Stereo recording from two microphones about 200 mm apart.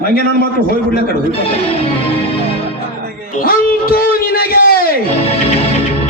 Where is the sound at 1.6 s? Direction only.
30° left (ahead or behind).